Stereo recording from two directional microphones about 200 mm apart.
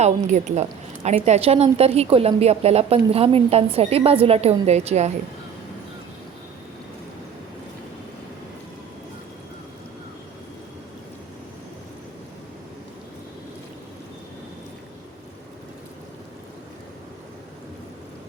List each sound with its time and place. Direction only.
0.0 s a woman's voice: 35° right (ahead or behind)